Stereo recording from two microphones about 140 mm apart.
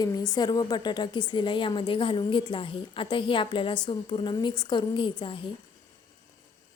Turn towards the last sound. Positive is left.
turn(degrees=35)  # may be behind; listen again after turning